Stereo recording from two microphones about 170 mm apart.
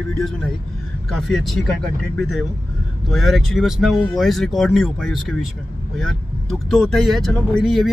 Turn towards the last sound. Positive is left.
turn(degrees=0)  # may be behind; listen again after turning